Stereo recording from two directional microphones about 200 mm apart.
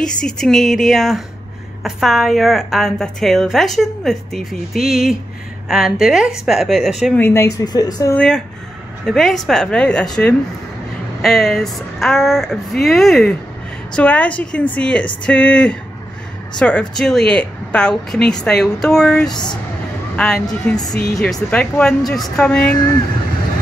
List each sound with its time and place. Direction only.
0.0 s a woman's voice: 5° left (ahead or behind)
9.0 s a woman's voice: centre (ahead or behind)
19.3 s speech: 20° left (ahead or behind)
20.4 s a woman's voice: 5° left (ahead or behind)